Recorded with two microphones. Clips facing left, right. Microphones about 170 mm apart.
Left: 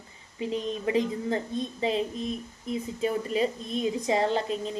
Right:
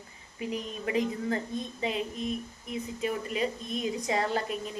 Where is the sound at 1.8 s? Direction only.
30° left (ahead or behind).